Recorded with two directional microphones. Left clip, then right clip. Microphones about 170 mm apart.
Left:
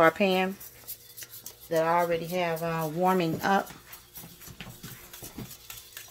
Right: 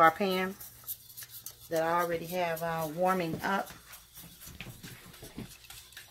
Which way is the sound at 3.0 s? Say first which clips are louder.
Left 4 dB; 50° left (ahead or behind).